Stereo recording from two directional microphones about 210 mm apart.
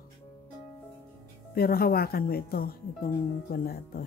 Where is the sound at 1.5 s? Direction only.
45° left (ahead or behind).